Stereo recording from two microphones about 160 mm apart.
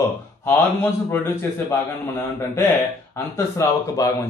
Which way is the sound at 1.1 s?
15° left (ahead or behind).